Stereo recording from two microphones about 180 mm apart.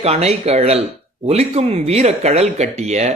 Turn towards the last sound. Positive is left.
turn(degrees=-40)  # may be behind; listen again after turning